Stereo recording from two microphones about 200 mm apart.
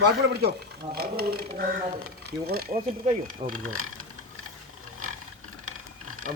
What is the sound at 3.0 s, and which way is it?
Speech, 45° right (ahead or behind).